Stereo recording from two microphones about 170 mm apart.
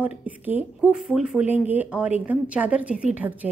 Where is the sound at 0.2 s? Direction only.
10° right (ahead or behind).